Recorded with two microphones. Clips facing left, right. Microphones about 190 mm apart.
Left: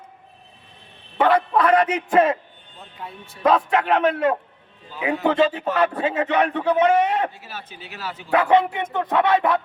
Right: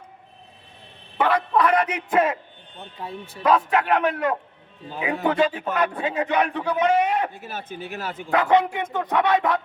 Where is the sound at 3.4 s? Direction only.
25° left (ahead or behind).